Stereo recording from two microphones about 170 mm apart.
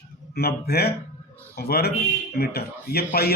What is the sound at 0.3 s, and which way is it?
A man's voice, 65° left (ahead or behind).